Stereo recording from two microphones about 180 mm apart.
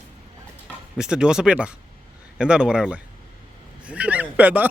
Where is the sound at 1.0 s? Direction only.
5° right (ahead or behind).